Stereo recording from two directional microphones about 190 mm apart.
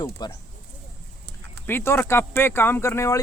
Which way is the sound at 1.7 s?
10° left (ahead or behind).